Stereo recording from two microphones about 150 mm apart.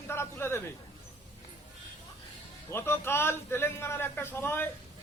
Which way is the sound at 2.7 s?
15° left (ahead or behind).